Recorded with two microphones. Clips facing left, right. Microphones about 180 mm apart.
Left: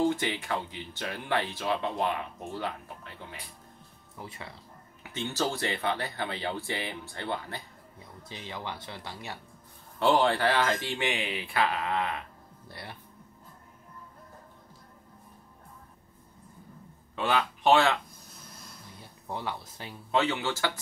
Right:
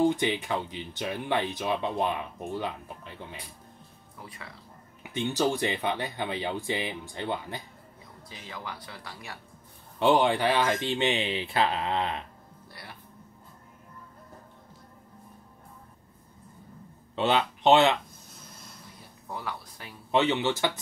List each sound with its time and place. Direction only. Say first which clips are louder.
0.0 s speech: right 3 dB; 15° right (ahead or behind)
4.2 s speech: left 3 dB; 25° left (ahead or behind)
5.0 s speech: right 4 dB; 15° right (ahead or behind)
8.3 s speech: left 2 dB; 25° left (ahead or behind)
9.9 s speech: right 2 dB; 15° right (ahead or behind)
12.6 s music: left 4 dB; 25° left (ahead or behind)
17.1 s speech: right 3 dB; 25° right (ahead or behind)
19.2 s speech: left 1 dB; 25° left (ahead or behind)
20.1 s speech: right 3 dB; 20° right (ahead or behind)